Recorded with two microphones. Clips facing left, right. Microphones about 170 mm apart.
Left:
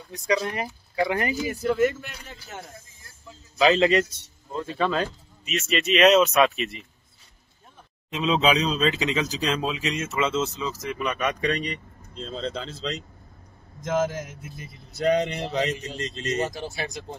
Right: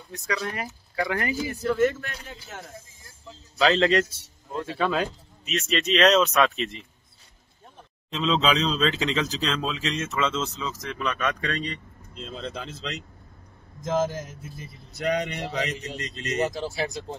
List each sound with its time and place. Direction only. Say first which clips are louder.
0.3 s speech: left 5 dB; 20° left (ahead or behind)
1.5 s a man's voice: even; 10° left (ahead or behind)
8.1 s a man's voice: left 2 dB; 15° left (ahead or behind)
12.1 s speech: left 4 dB; 35° left (ahead or behind)
15.0 s speech: left 4 dB; 30° left (ahead or behind)